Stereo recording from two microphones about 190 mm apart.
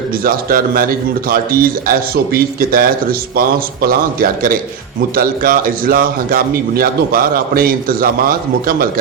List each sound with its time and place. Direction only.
0.3 s a man's voice: 50° right (ahead or behind)